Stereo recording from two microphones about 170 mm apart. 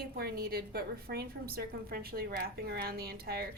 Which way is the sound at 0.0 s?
65° right (ahead or behind).